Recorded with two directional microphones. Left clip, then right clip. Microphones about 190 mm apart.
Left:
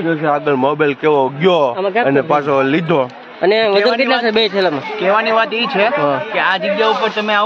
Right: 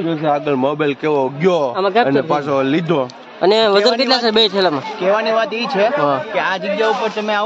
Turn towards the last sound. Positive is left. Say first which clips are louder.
# left 3 dB
turn(degrees=-15)  # may be behind; listen again after turning